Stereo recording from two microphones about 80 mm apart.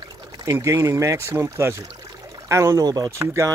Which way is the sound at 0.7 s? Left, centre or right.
Right.